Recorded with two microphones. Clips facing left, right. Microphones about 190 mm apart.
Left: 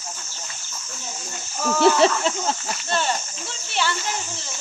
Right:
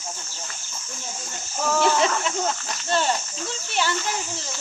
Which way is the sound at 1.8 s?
30° left (ahead or behind).